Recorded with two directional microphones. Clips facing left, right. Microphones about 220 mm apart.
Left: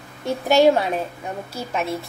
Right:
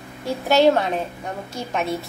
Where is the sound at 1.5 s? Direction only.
Centre (ahead or behind).